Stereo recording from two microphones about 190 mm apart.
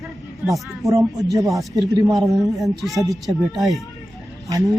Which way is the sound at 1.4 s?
15° right (ahead or behind).